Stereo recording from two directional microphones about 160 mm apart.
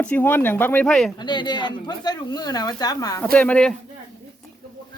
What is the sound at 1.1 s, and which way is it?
Speech, 25° left (ahead or behind).